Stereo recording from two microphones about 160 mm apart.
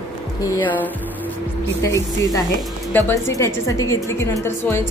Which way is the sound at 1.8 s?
20° left (ahead or behind).